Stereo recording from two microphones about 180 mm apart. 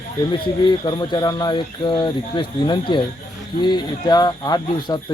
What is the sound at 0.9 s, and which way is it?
Speech, 25° left (ahead or behind).